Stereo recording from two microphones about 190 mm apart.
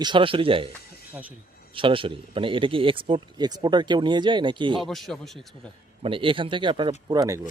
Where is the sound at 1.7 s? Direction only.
25° right (ahead or behind).